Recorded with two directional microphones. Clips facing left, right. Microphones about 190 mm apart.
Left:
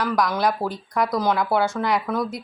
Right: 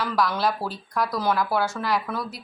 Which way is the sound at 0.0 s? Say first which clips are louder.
Left 2 dB; 15° left (ahead or behind).